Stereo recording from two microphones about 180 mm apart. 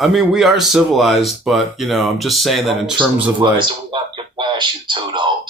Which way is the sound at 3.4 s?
25° right (ahead or behind).